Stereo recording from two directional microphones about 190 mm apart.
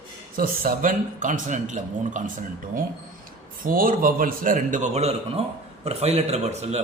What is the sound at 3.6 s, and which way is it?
Speech, 50° right (ahead or behind).